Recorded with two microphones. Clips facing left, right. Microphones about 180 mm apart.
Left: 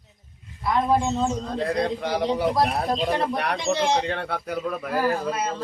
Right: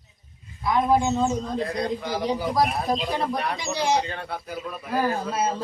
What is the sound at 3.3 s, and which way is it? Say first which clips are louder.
Speech: left 2 dB; 65° left (ahead or behind).